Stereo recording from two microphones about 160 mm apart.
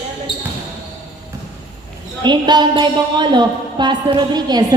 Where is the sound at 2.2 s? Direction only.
30° right (ahead or behind).